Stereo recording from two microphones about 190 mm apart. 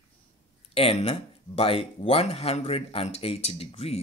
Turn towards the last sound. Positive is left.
turn(degrees=35)  # may be behind; listen again after turning